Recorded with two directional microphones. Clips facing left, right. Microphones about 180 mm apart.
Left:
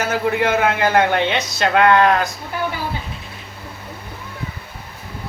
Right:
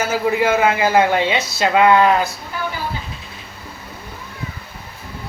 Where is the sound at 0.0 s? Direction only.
5° right (ahead or behind).